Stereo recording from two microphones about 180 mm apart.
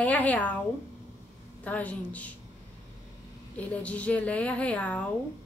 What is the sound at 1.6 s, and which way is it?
Speech, 10° left (ahead or behind).